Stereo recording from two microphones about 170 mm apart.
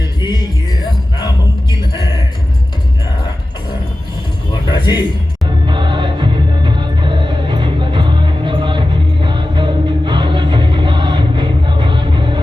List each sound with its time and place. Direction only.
0.0 s music: 25° left (ahead or behind)
4.7 s a sound: 25° left (ahead or behind)
5.6 s music: 30° right (ahead or behind)